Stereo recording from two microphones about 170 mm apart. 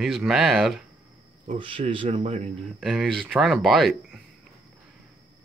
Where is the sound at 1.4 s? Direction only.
30° right (ahead or behind).